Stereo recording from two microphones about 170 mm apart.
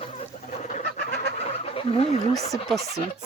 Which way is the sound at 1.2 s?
35° left (ahead or behind).